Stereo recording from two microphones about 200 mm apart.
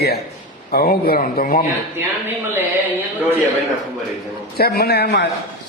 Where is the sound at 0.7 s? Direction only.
50° left (ahead or behind).